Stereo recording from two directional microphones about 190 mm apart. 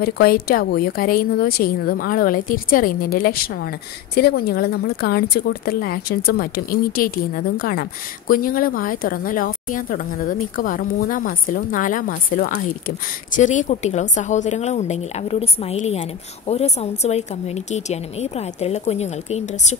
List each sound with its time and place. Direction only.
0.0 s a woman's voice: 50° left (ahead or behind); by 19.8 s 35° left (ahead or behind)